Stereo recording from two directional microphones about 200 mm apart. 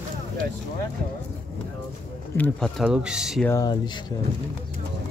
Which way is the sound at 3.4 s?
15° left (ahead or behind).